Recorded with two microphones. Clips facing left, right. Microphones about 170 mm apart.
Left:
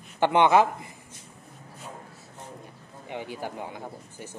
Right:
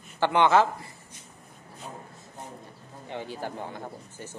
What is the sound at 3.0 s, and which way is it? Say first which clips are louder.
Speech: even; 15° left (ahead or behind).